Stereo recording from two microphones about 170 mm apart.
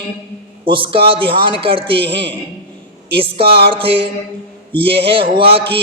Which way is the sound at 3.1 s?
30° right (ahead or behind).